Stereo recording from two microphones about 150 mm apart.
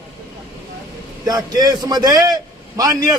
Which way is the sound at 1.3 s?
25° right (ahead or behind).